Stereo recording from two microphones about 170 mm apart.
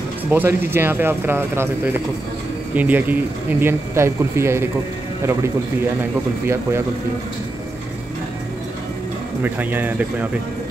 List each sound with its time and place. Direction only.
0.3 s speech: 15° right (ahead or behind)
2.7 s speech: 10° right (ahead or behind)
9.4 s speech: 10° right (ahead or behind)